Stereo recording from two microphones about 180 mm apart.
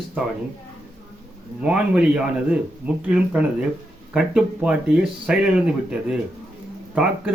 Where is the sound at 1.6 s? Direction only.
5° right (ahead or behind).